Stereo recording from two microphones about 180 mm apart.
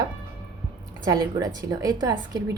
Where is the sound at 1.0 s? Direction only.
20° right (ahead or behind).